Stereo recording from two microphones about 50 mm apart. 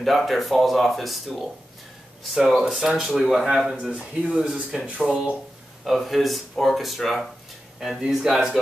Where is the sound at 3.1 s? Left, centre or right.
Centre.